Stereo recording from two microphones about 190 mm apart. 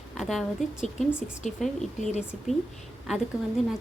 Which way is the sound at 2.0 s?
35° left (ahead or behind).